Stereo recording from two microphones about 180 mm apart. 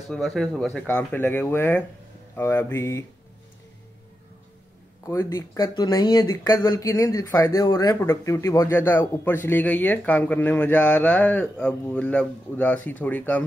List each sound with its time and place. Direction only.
0.1 s a man's voice: centre (ahead or behind)
5.0 s a man's voice: 15° left (ahead or behind)